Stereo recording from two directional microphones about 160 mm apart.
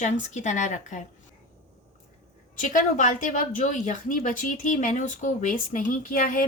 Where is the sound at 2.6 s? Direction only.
55° left (ahead or behind).